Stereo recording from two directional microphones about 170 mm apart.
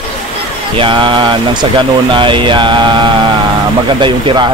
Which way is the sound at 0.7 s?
30° right (ahead or behind).